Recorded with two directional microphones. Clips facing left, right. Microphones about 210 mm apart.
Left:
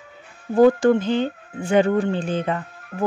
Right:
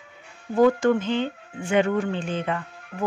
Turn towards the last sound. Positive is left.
turn(degrees=35)  # may be behind; listen again after turning